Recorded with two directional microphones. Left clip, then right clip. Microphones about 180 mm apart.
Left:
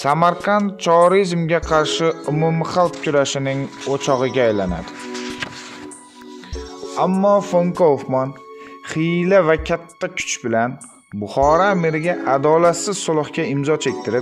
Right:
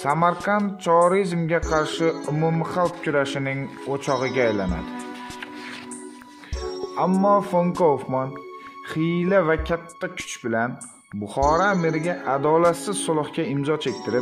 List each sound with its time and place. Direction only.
0.0 s a man's voice: 40° left (ahead or behind)
7.0 s a man's voice: 35° left (ahead or behind)